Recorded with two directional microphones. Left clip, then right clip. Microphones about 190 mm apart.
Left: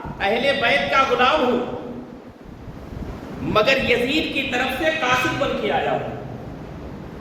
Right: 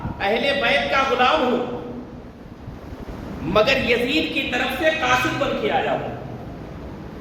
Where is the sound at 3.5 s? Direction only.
15° left (ahead or behind).